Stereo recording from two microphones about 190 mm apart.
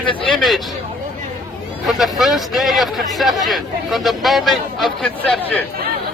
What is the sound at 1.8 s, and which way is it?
Speech, centre (ahead or behind).